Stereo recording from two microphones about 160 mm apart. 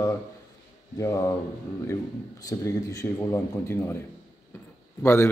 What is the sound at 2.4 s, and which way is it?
Speech, 20° left (ahead or behind).